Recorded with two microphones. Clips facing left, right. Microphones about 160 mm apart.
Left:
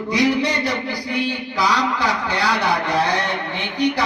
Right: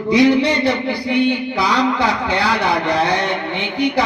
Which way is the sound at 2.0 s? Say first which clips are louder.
Right 4 dB; 60° right (ahead or behind).